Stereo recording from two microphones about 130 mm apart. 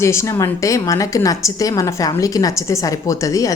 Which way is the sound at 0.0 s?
20° left (ahead or behind).